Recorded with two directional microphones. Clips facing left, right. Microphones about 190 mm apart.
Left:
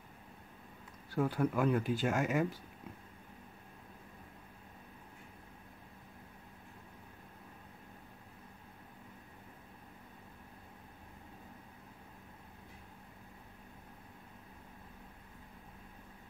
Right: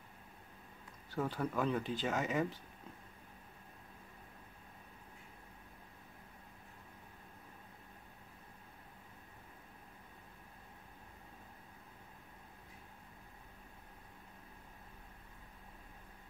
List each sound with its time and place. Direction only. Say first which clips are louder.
1.1 s speech: left 5 dB; 10° left (ahead or behind)